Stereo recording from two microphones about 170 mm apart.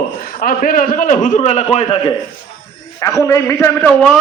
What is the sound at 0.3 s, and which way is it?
A man's voice, 50° left (ahead or behind).